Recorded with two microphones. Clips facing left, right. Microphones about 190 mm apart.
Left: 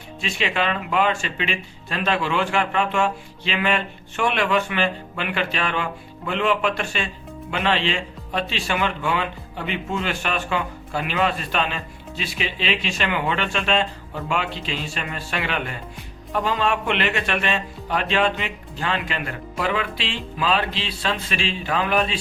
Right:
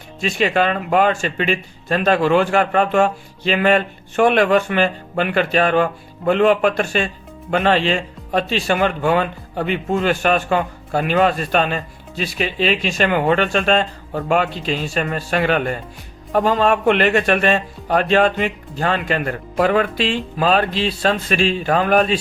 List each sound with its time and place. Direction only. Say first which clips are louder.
0.2 s speech: right 7 dB; 45° right (ahead or behind)